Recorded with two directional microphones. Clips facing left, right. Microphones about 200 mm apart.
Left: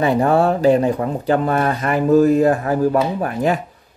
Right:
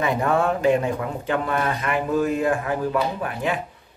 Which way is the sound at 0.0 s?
35° left (ahead or behind).